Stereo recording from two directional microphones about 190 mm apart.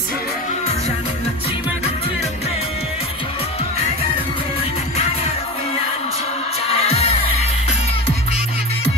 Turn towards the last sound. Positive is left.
turn(degrees=35)  # may be behind; listen again after turning